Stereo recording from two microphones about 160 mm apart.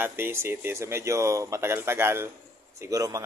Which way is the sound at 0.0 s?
15° right (ahead or behind).